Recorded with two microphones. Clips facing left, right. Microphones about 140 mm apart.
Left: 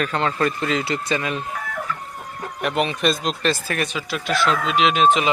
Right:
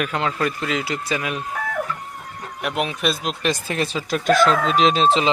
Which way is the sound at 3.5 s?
25° right (ahead or behind).